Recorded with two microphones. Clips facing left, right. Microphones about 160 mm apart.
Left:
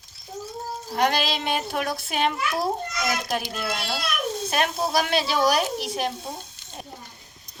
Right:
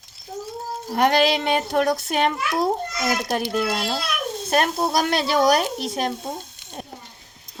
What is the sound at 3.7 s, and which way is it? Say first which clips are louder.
Speech: right 4 dB; 40° right (ahead or behind).